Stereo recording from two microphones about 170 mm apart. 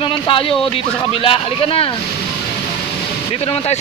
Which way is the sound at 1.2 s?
35° left (ahead or behind).